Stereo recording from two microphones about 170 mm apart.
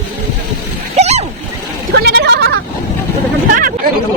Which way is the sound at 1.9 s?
80° right.